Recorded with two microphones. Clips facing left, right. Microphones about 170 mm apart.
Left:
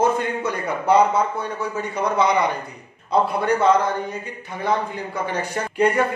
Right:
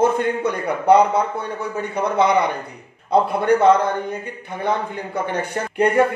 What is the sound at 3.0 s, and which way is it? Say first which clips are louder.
Speech: right 3 dB; 60° right (ahead or behind).